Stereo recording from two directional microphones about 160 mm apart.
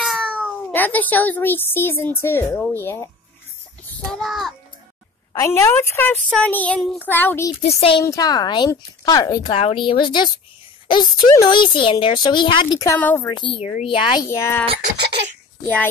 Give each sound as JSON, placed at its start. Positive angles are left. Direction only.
{"t": 0.0, "sound": "meow", "side_deg": 5}
{"t": 0.7, "sound": "a woman's voice", "side_deg": 10}
{"t": 3.9, "sound": "child singing", "side_deg": 5}
{"t": 5.3, "sound": "a woman's voice", "side_deg": 20}
{"t": 7.6, "sound": "speech", "side_deg": 35}
{"t": 8.0, "sound": "speech", "side_deg": 20}
{"t": 9.5, "sound": "speech", "side_deg": 35}
{"t": 13.3, "sound": "speech", "side_deg": 30}
{"t": 14.2, "sound": "a woman's voice", "side_deg": 15}